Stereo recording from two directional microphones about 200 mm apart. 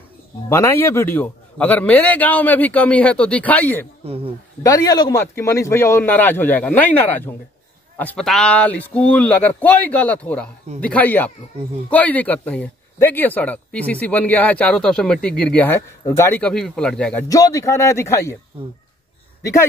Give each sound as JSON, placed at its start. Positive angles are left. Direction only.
{"t": 0.5, "sound": "speech", "side_deg": 15}
{"t": 4.0, "sound": "speech", "side_deg": -30}
{"t": 4.6, "sound": "speech", "side_deg": 15}
{"t": 17.3, "sound": "speech", "side_deg": 15}
{"t": 18.5, "sound": "speech", "side_deg": -30}